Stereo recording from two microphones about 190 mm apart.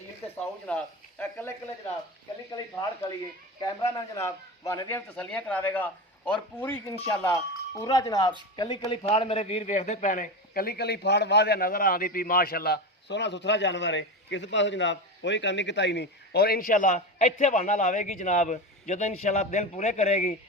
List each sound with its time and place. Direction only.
0.7 s a man's voice: 5° left (ahead or behind)
3.6 s a man's voice: 20° left (ahead or behind); by 20.3 s 35° left (ahead or behind)